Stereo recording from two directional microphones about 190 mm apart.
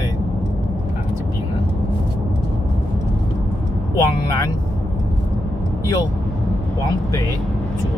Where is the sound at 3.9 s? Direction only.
20° left (ahead or behind).